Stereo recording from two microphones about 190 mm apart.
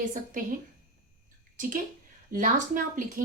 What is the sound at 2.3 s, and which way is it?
Speech, 45° right (ahead or behind).